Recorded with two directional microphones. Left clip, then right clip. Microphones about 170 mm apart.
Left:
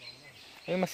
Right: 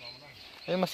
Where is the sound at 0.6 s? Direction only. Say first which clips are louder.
Right 1 dB; 20° left (ahead or behind).